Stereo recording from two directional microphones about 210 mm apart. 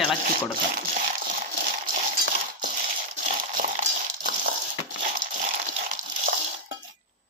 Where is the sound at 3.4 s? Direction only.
40° right (ahead or behind).